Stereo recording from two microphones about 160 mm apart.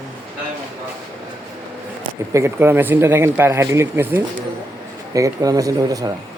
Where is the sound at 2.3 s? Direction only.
15° right (ahead or behind).